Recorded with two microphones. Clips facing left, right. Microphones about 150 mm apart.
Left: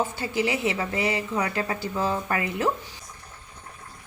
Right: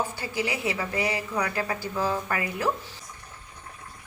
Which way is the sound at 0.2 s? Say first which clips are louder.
Left 4 dB; 25° left (ahead or behind).